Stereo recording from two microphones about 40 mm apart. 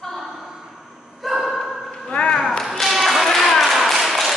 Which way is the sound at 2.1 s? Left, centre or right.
Left.